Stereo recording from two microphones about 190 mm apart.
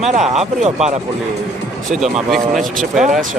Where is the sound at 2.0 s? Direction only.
Centre (ahead or behind).